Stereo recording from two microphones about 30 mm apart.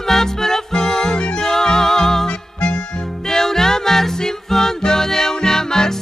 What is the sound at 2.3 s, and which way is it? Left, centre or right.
Music, left.